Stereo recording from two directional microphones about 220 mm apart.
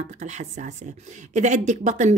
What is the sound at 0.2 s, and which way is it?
A woman's voice, 35° right (ahead or behind).